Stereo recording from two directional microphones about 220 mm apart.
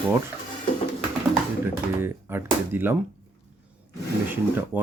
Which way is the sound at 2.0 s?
10° right (ahead or behind).